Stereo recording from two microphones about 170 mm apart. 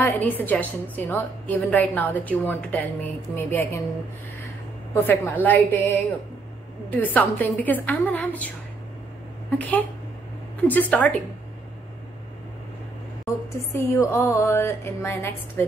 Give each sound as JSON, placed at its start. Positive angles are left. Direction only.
{"t": 0.0, "sound": "a woman's voice", "side_deg": 10}
{"t": 4.9, "sound": "a woman's voice", "side_deg": 10}
{"t": 9.6, "sound": "a woman's voice", "side_deg": 10}
{"t": 13.7, "sound": "a woman's voice", "side_deg": 15}